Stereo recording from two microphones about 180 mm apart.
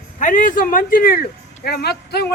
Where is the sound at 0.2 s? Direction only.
45° left (ahead or behind).